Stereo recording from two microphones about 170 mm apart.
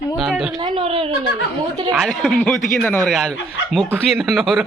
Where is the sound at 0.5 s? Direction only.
30° right (ahead or behind).